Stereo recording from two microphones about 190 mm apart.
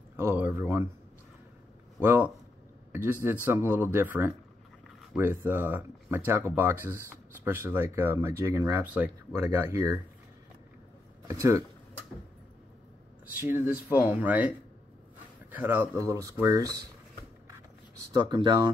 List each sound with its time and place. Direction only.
0.1 s speech: 10° right (ahead or behind)
2.0 s speech: 10° right (ahead or behind)
11.2 s speech: 15° right (ahead or behind)
13.3 s speech: 10° right (ahead or behind)
15.5 s speech: 10° right (ahead or behind)
18.1 s speech: 20° right (ahead or behind)